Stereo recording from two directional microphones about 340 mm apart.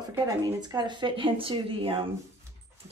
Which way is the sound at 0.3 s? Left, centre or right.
Centre.